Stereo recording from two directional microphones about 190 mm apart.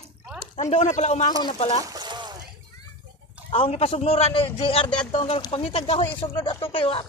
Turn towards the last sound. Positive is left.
turn(degrees=30)  # may be behind; listen again after turning